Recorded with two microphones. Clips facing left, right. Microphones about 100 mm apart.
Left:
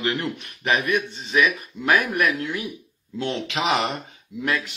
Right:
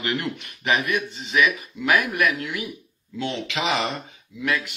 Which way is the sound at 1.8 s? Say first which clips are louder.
Left 1 dB; 35° left (ahead or behind).